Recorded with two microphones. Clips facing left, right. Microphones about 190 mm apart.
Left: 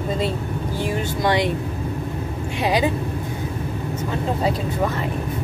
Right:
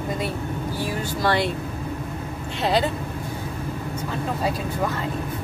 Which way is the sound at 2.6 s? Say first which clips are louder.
Left 1 dB; 10° left (ahead or behind).